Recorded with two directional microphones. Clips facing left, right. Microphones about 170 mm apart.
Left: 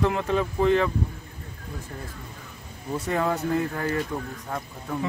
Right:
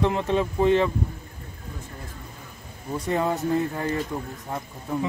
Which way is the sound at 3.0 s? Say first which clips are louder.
Right 1 dB; 20° right (ahead or behind).